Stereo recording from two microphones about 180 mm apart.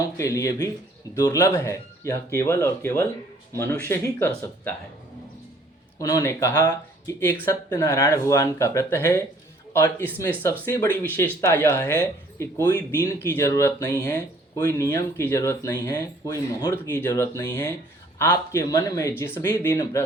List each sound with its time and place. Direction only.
0.0 s speech: 15° left (ahead or behind)
6.0 s speech: 20° left (ahead or behind)